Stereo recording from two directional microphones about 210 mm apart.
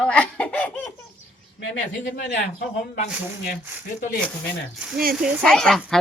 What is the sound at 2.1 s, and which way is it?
Speech, 45° left (ahead or behind).